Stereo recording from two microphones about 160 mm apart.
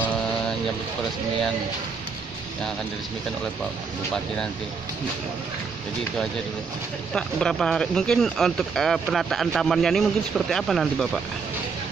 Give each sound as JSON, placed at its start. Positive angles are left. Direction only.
{"t": 7.2, "sound": "speech", "side_deg": 5}